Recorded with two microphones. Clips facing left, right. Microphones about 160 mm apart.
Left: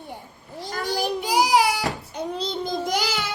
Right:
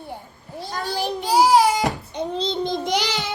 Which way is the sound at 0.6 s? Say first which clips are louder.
Even; 15° left (ahead or behind).